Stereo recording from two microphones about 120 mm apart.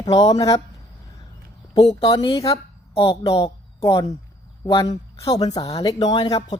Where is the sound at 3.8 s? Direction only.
35° left (ahead or behind).